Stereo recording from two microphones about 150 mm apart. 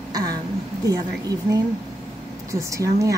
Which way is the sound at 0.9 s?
25° right (ahead or behind).